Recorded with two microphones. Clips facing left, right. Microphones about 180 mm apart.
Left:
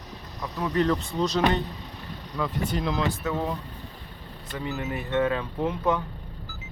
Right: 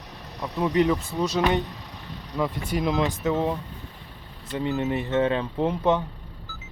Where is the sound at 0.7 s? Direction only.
10° right (ahead or behind).